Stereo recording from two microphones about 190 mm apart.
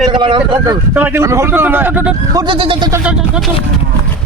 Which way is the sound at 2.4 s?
25° right (ahead or behind).